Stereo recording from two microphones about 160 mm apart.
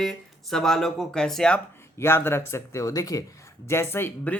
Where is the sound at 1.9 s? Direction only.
15° left (ahead or behind).